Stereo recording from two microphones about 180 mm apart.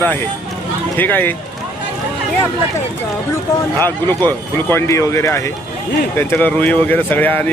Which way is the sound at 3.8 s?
10° left (ahead or behind).